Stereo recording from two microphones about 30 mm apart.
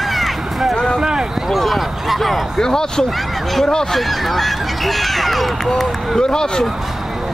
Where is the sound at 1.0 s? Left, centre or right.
Right.